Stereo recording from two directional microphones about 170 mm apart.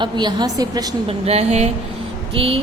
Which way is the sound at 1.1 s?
35° right (ahead or behind).